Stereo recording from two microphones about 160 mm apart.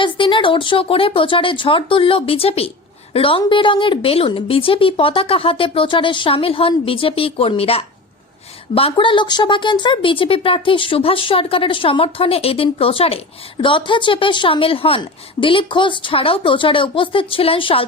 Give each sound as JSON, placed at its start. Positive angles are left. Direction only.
{"t": 0.0, "sound": "a woman's voice", "side_deg": 30}